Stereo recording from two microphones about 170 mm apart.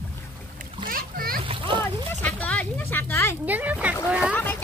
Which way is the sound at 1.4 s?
30° right (ahead or behind).